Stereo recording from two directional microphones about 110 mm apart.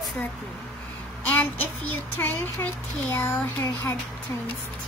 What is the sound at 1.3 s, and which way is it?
Speech, 15° left (ahead or behind).